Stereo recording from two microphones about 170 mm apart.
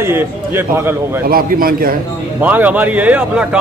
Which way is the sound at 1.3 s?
55° right (ahead or behind).